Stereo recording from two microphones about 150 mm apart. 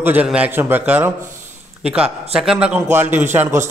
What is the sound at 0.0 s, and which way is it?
A man's voice, 10° right (ahead or behind).